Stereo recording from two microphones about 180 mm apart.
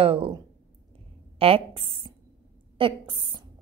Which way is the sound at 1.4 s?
30° right (ahead or behind).